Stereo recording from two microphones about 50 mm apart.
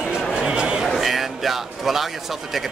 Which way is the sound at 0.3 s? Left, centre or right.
Centre.